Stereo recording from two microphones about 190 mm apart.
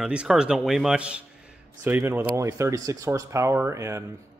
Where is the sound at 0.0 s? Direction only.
5° right (ahead or behind).